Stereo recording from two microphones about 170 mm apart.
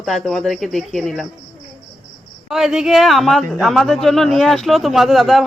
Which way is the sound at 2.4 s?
Centre (ahead or behind).